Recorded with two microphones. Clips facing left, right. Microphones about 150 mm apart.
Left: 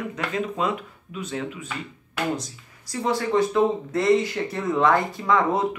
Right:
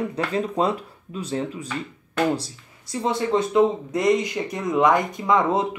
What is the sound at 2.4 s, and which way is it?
Speech, 25° right (ahead or behind).